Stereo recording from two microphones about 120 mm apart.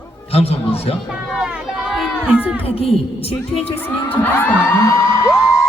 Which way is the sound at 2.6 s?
55° left (ahead or behind).